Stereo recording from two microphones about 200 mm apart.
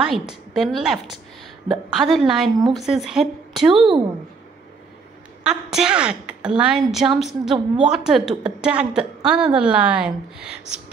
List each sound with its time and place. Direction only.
0.0 s a woman's voice: 5° right (ahead or behind)
3.6 s a woman's voice: 25° right (ahead or behind)
5.4 s a woman's voice: 5° right (ahead or behind)